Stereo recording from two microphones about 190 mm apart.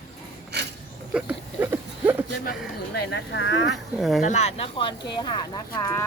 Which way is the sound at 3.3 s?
75° left (ahead or behind).